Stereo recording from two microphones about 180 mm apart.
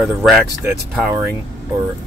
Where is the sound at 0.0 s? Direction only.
Centre (ahead or behind).